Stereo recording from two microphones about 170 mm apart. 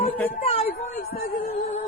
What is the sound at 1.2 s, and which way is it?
Music, 60° left (ahead or behind).